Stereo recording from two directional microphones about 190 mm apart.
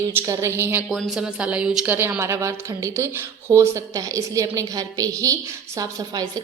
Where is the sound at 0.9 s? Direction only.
Centre (ahead or behind).